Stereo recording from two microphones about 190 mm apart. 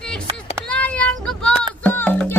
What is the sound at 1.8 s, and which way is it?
Music, 10° left (ahead or behind).